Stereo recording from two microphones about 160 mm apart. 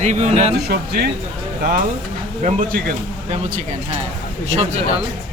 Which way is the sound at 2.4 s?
60° right (ahead or behind).